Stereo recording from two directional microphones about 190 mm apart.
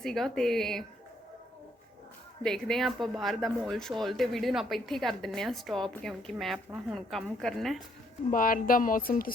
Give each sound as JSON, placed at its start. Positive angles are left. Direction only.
{"t": 0.0, "sound": "speech", "side_deg": 0}
{"t": 2.4, "sound": "speech", "side_deg": 5}
{"t": 8.3, "sound": "speech", "side_deg": 45}